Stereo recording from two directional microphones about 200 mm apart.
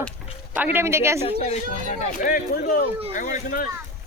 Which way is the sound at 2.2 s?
45° left (ahead or behind).